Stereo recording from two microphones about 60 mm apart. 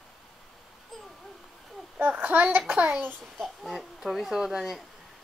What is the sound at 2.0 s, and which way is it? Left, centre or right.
Speech, right.